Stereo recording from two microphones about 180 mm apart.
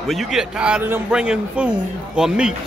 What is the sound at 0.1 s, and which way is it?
A man's voice, centre (ahead or behind).